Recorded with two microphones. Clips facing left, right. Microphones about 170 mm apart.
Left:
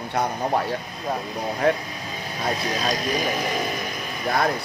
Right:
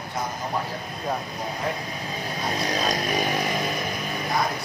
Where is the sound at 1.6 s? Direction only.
65° left (ahead or behind).